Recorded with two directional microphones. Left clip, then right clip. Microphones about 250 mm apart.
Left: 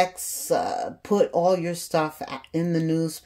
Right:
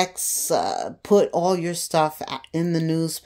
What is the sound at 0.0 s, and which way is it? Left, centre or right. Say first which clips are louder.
Speech: even; right.